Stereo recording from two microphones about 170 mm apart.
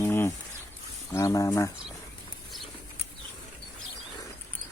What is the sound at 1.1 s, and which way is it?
Speech, 20° left (ahead or behind).